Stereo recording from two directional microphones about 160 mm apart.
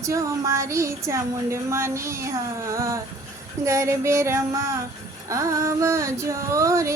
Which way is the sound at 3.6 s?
20° right (ahead or behind).